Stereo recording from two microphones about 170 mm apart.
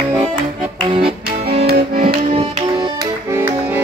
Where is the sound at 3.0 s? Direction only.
15° right (ahead or behind).